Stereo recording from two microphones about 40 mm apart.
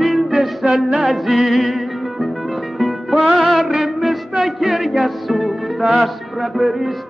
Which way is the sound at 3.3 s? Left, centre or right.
Centre.